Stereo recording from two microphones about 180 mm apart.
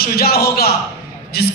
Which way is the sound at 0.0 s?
60° left (ahead or behind).